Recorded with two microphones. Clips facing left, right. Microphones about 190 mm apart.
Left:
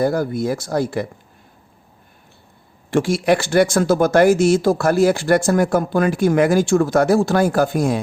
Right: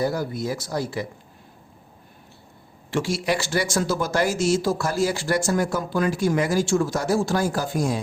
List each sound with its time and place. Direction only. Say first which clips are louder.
0.0 s speech: left 6 dB; 55° left (ahead or behind)
2.9 s speech: left 7 dB; 55° left (ahead or behind)